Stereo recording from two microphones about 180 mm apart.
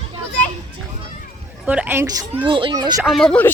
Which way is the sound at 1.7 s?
10° right (ahead or behind).